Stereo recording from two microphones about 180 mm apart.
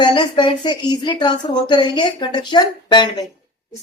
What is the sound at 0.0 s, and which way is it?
Speech, 25° left (ahead or behind).